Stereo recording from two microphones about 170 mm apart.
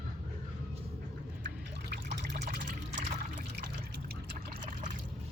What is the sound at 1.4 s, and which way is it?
Trickle, 85° right.